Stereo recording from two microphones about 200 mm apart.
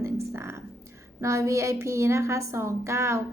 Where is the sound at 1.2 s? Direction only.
15° right (ahead or behind).